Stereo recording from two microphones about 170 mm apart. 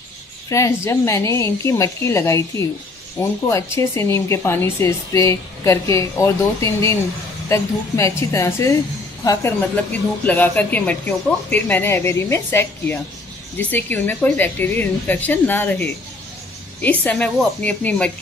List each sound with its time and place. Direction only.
0.5 s a woman's voice: 15° left (ahead or behind)
10.2 s speech: 10° left (ahead or behind)